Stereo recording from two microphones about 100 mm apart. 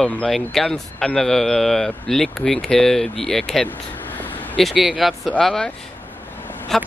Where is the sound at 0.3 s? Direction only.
5° left (ahead or behind).